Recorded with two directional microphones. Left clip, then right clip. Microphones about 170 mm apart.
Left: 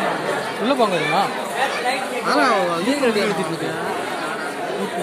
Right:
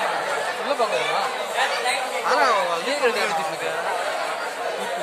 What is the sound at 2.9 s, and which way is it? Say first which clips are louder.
Speech: left 1 dB; 30° left (ahead or behind).